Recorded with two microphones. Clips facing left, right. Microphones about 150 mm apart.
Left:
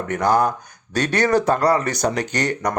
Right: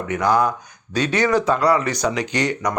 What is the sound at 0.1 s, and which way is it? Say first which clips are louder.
Speech: even; 45° left (ahead or behind).